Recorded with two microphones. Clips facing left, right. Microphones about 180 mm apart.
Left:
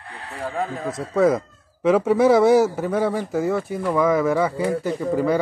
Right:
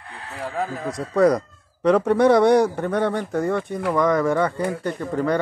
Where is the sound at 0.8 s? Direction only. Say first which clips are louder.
Right 1 dB; centre (ahead or behind).